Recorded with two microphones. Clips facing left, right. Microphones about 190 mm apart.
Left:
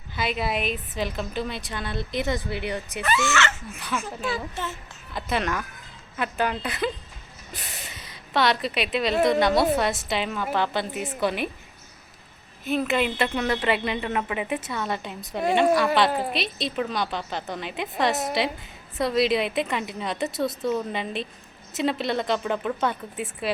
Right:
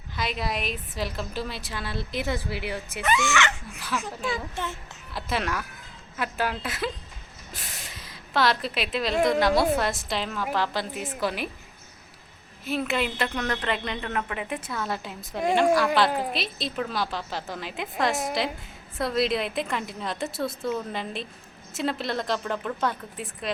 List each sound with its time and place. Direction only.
0.2 s a woman's voice: 5° left (ahead or behind)
3.3 s speech: 15° right (ahead or behind)
3.8 s a woman's voice: centre (ahead or behind)
7.5 s a sound: centre (ahead or behind)
9.2 s a woman's voice: centre (ahead or behind)
12.6 s a woman's voice: centre (ahead or behind)